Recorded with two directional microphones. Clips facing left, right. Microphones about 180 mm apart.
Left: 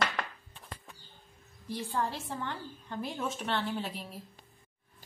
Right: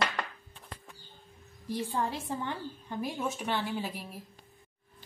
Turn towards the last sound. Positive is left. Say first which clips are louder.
# right 1 dB
turn(degrees=-10)  # may be behind; listen again after turning